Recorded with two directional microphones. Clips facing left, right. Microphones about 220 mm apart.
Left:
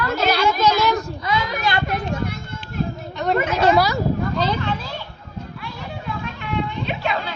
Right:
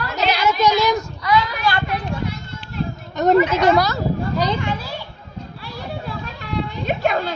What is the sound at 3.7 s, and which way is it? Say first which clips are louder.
Speech: even; 10° left (ahead or behind).